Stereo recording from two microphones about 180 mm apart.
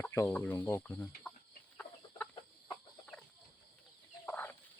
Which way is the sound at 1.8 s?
10° left (ahead or behind).